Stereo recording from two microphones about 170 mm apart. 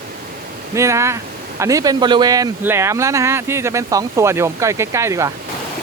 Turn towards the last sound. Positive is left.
turn(degrees=-15)  # may be behind; listen again after turning